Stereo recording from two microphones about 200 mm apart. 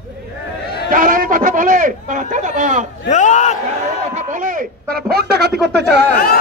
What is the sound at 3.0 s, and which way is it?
Speech, 35° left (ahead or behind).